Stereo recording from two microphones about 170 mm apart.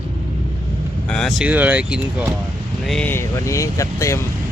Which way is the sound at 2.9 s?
10° left (ahead or behind).